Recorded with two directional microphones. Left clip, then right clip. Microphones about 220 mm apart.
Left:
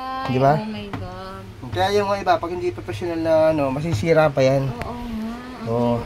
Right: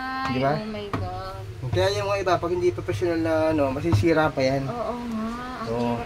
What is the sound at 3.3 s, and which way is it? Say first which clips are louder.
Speech: left 8 dB; 35° left (ahead or behind).